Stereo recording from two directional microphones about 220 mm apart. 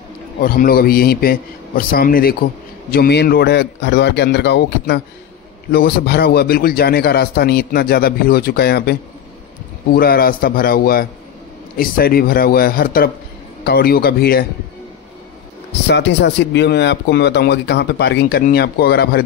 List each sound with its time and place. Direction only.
0.4 s speech: 40° left (ahead or behind)
9.9 s a man's voice: 45° left (ahead or behind)
15.9 s speech: 50° left (ahead or behind)